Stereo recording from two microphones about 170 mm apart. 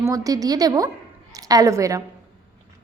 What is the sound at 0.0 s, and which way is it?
A woman's voice, 20° right (ahead or behind).